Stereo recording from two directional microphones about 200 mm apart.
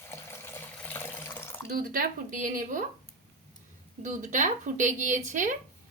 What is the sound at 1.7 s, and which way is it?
A woman's voice, 45° right (ahead or behind).